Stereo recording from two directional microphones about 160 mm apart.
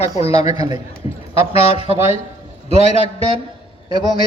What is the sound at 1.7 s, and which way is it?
Speech, 35° left (ahead or behind).